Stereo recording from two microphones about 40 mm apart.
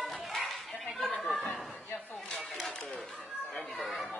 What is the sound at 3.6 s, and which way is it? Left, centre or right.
Chatter, left.